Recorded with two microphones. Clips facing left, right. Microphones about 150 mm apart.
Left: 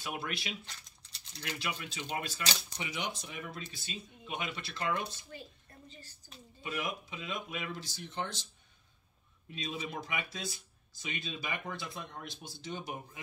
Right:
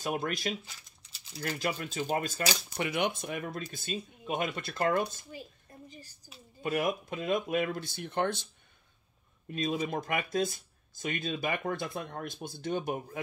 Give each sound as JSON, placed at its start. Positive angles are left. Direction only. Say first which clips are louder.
{"t": 0.0, "sound": "speech", "louder": "right 7 dB", "side_deg": -45}
{"t": 0.7, "sound": "crumpling", "louder": "even", "side_deg": -5}
{"t": 1.6, "sound": "speech", "louder": "right 8 dB", "side_deg": -45}
{"t": 2.8, "sound": "speech", "louder": "right 12 dB", "side_deg": -55}
{"t": 5.9, "sound": "a woman's voice", "louder": "right 3 dB", "side_deg": -15}
{"t": 6.6, "sound": "speech", "louder": "right 8 dB", "side_deg": -50}
{"t": 9.5, "sound": "speech", "louder": "right 8 dB", "side_deg": -50}